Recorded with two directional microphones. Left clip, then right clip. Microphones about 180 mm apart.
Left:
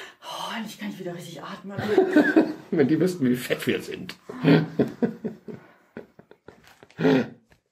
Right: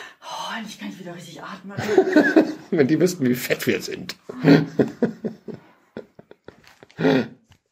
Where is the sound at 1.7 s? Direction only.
45° right (ahead or behind).